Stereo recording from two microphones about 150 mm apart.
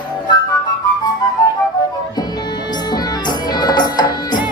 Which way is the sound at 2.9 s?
25° left (ahead or behind).